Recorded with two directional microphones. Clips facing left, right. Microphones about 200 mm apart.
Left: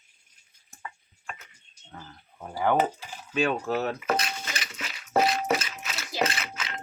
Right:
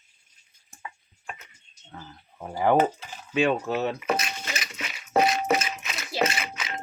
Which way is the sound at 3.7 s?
20° right (ahead or behind).